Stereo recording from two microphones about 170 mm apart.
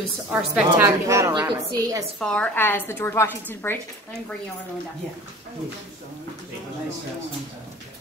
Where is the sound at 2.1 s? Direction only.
5° left (ahead or behind).